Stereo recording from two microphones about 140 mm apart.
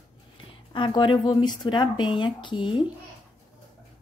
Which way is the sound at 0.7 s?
35° left (ahead or behind).